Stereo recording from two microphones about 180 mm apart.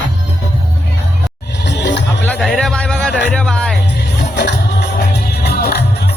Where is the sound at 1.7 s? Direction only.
75° left (ahead or behind).